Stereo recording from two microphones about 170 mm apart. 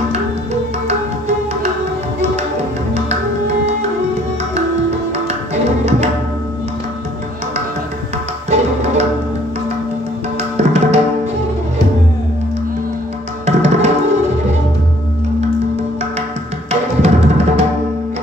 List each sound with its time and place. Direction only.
0.8 s music: 40° right (ahead or behind)
5.1 s tabla: 40° right (ahead or behind)
8.5 s music: 40° right (ahead or behind)
10.6 s music: 40° right (ahead or behind)
13.5 s tabla: 40° right (ahead or behind)
17.0 s music: 40° right (ahead or behind)